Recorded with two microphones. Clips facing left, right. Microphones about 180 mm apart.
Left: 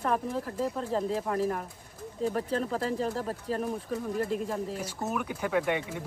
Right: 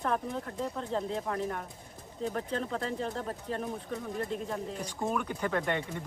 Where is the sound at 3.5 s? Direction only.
5° left (ahead or behind).